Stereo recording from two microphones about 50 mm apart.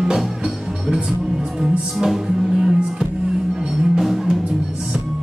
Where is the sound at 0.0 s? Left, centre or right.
Centre.